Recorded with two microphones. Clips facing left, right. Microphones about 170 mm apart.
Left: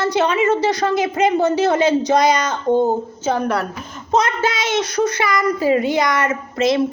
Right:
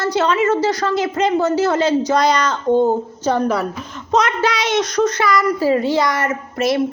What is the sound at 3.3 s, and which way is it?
Speech, centre (ahead or behind).